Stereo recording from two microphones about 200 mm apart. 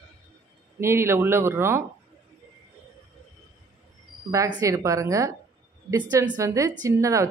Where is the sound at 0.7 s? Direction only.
15° right (ahead or behind).